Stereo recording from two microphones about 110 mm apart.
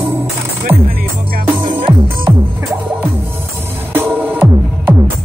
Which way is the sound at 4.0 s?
15° right (ahead or behind).